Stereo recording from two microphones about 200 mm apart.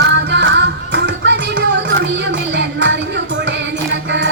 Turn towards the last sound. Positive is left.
turn(degrees=-60)  # may be behind; listen again after turning